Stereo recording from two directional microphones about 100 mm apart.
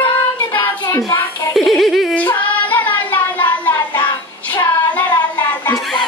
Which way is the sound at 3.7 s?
40° left (ahead or behind).